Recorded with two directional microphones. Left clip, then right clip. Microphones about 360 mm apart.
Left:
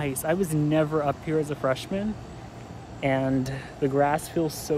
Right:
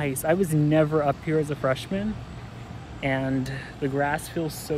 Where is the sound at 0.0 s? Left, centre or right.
Centre.